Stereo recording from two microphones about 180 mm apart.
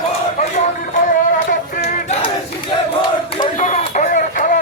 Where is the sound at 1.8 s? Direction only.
40° left (ahead or behind).